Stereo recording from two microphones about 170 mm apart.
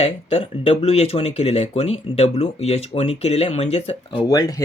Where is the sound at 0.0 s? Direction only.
35° left (ahead or behind).